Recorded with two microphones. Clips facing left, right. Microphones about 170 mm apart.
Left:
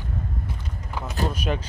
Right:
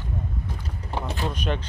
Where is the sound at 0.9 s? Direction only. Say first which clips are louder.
Right 3 dB; 30° right (ahead or behind).